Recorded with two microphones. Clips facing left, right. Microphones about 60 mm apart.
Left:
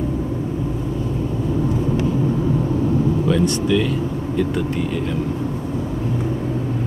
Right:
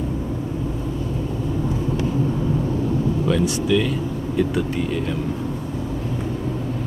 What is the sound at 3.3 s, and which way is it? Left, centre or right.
Speech, centre.